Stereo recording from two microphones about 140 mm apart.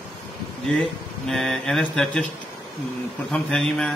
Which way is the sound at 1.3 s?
5° left (ahead or behind).